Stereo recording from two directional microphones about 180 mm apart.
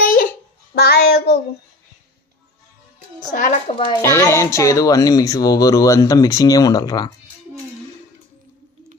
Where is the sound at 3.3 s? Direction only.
45° left (ahead or behind).